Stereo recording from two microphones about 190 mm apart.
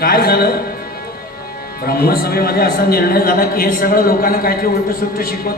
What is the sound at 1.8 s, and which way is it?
A man's voice, 55° left (ahead or behind).